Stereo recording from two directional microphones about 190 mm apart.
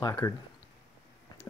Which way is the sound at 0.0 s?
15° left (ahead or behind).